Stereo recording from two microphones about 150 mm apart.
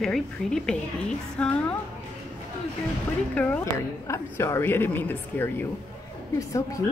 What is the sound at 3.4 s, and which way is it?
A woman's voice, 10° left (ahead or behind).